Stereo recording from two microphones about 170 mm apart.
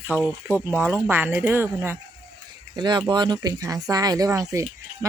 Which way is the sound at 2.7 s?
25° right (ahead or behind).